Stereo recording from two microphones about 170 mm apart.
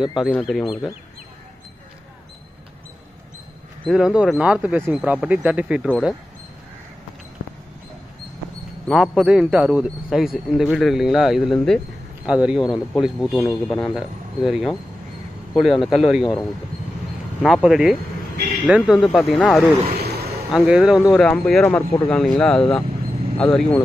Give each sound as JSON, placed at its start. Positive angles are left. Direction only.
{"t": 0.2, "sound": "a man's voice", "side_deg": 0}
{"t": 3.8, "sound": "a man's voice", "side_deg": -5}
{"t": 8.8, "sound": "a man's voice", "side_deg": 0}
{"t": 17.4, "sound": "a man's voice", "side_deg": 0}
{"t": 19.9, "sound": "a sound", "side_deg": -70}
{"t": 20.5, "sound": "a man's voice", "side_deg": -5}